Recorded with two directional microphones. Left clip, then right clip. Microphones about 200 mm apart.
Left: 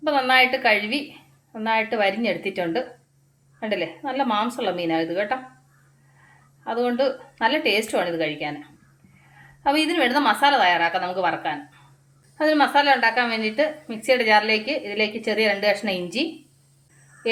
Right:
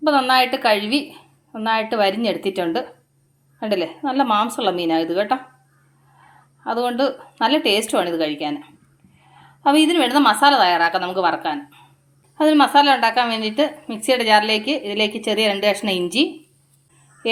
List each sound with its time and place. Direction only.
0.0 s a woman's voice: 30° right (ahead or behind)
6.7 s a woman's voice: 30° right (ahead or behind)
9.6 s a woman's voice: 35° right (ahead or behind)